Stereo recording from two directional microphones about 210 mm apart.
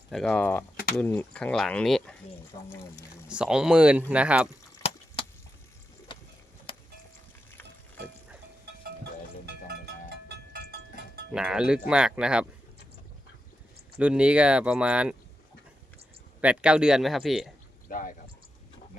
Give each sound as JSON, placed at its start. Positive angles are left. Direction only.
{"t": 0.1, "sound": "speech", "side_deg": 5}
{"t": 2.5, "sound": "speech", "side_deg": 25}
{"t": 3.2, "sound": "speech", "side_deg": -5}
{"t": 9.8, "sound": "a sound", "side_deg": -50}
{"t": 11.3, "sound": "speech", "side_deg": -5}
{"t": 14.0, "sound": "speech", "side_deg": -5}
{"t": 16.4, "sound": "speech", "side_deg": -5}
{"t": 17.8, "sound": "a sound", "side_deg": 40}